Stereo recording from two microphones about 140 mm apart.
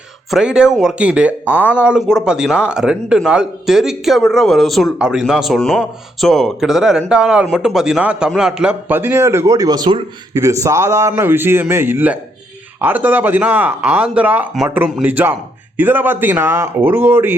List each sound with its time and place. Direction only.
0.3 s a man's voice: 5° right (ahead or behind)